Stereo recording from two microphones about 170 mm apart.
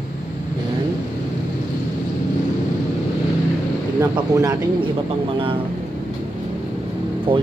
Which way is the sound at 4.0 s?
20° right (ahead or behind).